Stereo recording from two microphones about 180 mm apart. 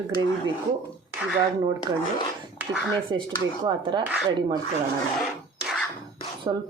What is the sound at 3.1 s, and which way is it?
Speech, 25° right (ahead or behind).